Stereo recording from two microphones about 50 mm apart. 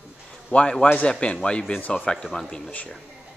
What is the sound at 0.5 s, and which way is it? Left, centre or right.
Speech, left.